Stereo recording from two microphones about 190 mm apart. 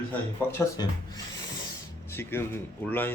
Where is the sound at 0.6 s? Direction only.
20° left (ahead or behind).